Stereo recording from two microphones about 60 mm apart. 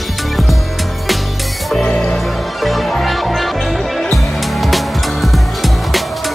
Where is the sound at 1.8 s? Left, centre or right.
Centre.